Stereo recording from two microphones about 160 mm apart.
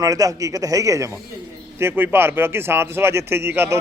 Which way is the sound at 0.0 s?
20° right (ahead or behind).